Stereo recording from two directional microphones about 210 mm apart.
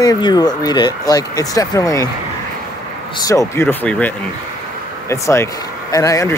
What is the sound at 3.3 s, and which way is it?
Speech, 15° left (ahead or behind).